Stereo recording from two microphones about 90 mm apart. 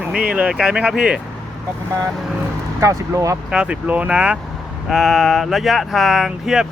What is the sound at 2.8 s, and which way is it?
Speech, 35° right (ahead or behind).